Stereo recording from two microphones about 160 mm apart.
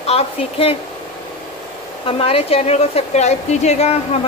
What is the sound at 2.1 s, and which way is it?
A woman's voice, 35° left (ahead or behind).